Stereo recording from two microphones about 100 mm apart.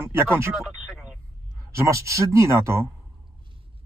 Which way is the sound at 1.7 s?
30° right (ahead or behind).